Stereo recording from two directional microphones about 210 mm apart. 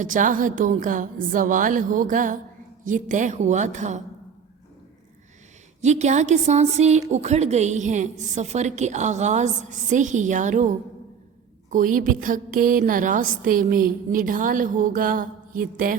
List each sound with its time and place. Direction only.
0.0 s a woman's voice: 40° right (ahead or behind)
5.8 s a woman's voice: 35° right (ahead or behind)
11.7 s a woman's voice: 40° right (ahead or behind)